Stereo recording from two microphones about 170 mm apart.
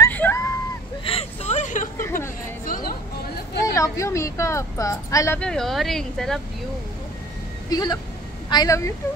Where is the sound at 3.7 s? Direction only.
15° left (ahead or behind).